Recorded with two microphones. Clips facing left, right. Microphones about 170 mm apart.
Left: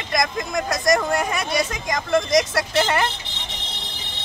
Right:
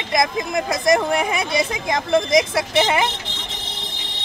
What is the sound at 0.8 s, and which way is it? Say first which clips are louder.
Speech: right 2 dB; 20° right (ahead or behind).